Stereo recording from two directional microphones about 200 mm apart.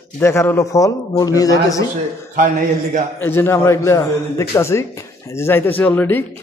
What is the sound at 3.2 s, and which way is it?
A man's voice, 10° left (ahead or behind).